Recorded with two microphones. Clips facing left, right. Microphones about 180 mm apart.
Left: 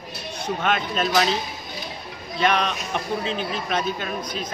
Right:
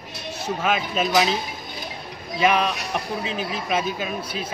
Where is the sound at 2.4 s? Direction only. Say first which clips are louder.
Right 2 dB; 5° right (ahead or behind).